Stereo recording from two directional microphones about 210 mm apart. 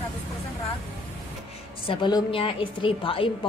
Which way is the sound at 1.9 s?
20° left (ahead or behind).